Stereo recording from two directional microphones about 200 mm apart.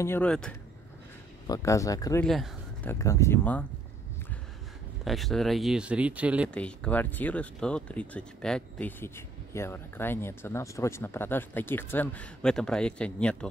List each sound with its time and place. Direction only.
0.0 s speech: 10° left (ahead or behind)
1.5 s speech: 15° left (ahead or behind)
2.2 s speech: centre (ahead or behind)
2.9 s speech: 15° left (ahead or behind)
5.0 s speech: centre (ahead or behind)
6.5 s speech: 5° left (ahead or behind)